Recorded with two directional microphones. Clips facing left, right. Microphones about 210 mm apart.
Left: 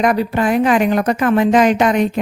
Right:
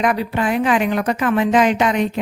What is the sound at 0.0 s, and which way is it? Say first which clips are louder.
A woman's voice: left 3 dB; 40° left (ahead or behind).